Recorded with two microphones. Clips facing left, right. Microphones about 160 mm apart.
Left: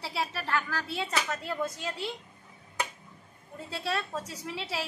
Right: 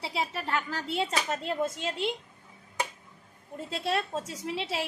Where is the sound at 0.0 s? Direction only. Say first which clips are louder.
Right 1 dB; 15° right (ahead or behind).